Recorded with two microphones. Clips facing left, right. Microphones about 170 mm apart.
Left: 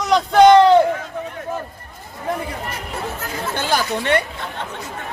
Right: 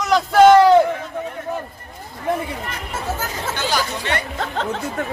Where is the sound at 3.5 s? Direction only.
55° left (ahead or behind).